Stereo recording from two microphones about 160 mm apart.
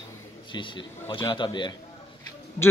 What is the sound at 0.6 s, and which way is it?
A man's voice, 30° left (ahead or behind).